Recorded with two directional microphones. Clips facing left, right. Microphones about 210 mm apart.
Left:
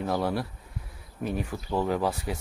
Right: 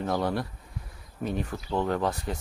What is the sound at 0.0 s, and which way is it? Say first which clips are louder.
Speech: even; centre (ahead or behind).